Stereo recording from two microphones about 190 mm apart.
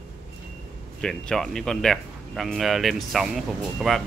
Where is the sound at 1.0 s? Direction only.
Centre (ahead or behind).